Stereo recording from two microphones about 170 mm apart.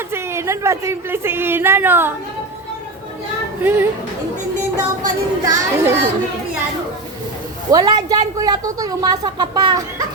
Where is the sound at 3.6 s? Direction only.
10° right (ahead or behind).